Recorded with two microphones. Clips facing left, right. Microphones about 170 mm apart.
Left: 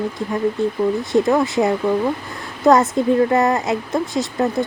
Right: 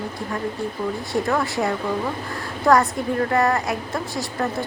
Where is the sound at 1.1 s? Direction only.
20° left (ahead or behind).